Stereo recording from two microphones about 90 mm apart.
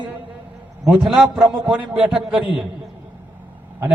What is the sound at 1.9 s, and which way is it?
Speech, 15° right (ahead or behind).